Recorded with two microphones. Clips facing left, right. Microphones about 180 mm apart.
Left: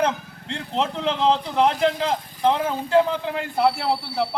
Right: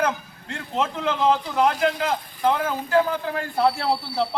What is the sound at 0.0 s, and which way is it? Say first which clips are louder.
Speech: left 1 dB; 30° left (ahead or behind).